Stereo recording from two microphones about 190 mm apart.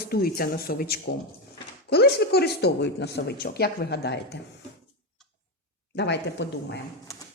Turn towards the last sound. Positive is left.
turn(degrees=65)  # may be behind; listen again after turning